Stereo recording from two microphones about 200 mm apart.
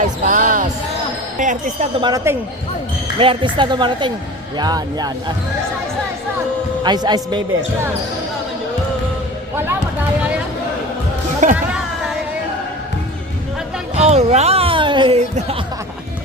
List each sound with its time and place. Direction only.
0.3 s basketball bounce: 40° right (ahead or behind)
1.4 s speech: 40° right (ahead or behind)
2.0 s speech: 20° right (ahead or behind)
6.8 s speech: 20° right (ahead or behind)
11.4 s a sound: 40° right (ahead or behind)
13.9 s a sound: 30° right (ahead or behind)